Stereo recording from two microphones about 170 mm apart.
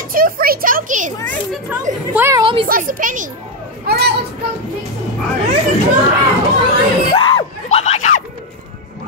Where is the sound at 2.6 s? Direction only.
55° right (ahead or behind).